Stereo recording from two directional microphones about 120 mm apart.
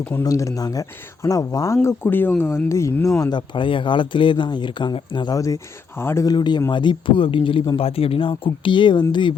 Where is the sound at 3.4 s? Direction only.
45° left (ahead or behind).